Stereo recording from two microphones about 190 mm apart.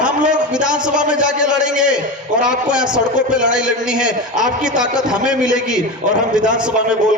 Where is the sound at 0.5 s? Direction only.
5° right (ahead or behind).